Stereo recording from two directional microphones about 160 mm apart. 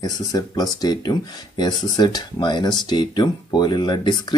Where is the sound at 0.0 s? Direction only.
25° left (ahead or behind).